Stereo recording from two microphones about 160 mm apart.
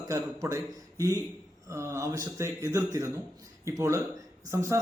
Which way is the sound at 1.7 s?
20° right (ahead or behind).